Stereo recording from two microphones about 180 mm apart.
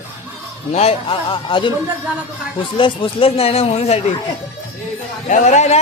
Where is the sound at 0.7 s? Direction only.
35° left (ahead or behind).